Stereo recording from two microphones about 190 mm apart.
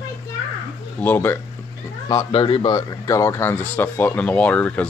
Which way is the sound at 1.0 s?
10° left (ahead or behind).